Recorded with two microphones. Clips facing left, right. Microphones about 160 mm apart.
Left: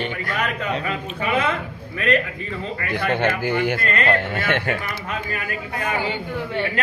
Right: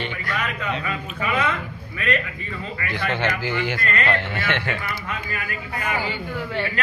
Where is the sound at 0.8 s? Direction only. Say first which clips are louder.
Left 2 dB; 30° left (ahead or behind).